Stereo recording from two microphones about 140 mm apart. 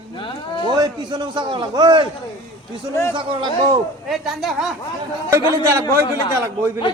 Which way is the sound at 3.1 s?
35° right (ahead or behind).